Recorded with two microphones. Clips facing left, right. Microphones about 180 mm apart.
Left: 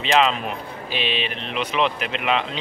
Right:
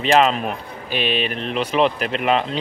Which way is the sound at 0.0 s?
45° right (ahead or behind).